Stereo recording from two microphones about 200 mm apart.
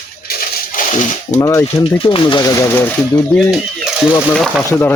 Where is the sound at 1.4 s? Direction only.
15° left (ahead or behind).